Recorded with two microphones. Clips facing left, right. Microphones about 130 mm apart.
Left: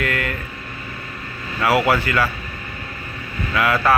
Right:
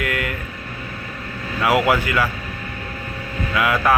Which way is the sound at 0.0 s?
15° right (ahead or behind).